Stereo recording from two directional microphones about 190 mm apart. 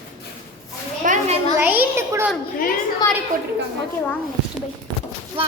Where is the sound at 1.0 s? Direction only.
45° right (ahead or behind).